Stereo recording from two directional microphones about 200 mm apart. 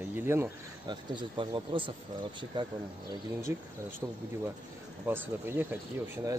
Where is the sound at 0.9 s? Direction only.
25° right (ahead or behind).